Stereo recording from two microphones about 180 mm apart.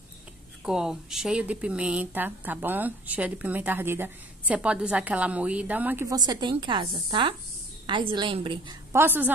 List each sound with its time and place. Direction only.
0.7 s a woman's voice: 5° right (ahead or behind); by 8.7 s 25° right (ahead or behind)
8.9 s speech: 10° right (ahead or behind)